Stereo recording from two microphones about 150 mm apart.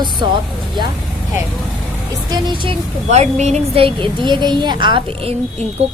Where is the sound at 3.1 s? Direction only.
50° right (ahead or behind).